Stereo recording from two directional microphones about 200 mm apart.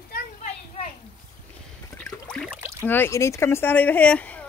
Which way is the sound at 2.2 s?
5° left (ahead or behind).